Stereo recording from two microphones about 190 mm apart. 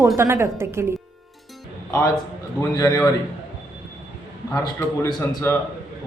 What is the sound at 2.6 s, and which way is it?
Speech, 20° left (ahead or behind).